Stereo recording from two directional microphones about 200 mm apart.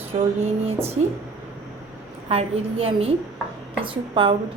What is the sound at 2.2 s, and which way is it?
A woman's voice, 30° right (ahead or behind).